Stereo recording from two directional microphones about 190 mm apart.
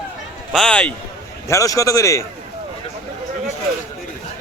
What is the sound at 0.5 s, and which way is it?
Speech, 5° left (ahead or behind).